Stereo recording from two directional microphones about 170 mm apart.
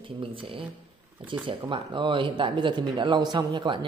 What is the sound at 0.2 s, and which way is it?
Speech, 30° right (ahead or behind).